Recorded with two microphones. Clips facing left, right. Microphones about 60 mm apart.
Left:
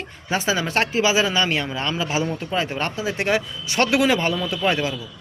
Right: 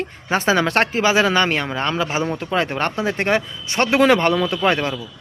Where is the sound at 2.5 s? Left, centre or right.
Right.